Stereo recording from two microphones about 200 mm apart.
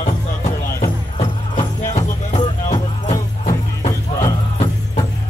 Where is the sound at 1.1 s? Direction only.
30° left (ahead or behind).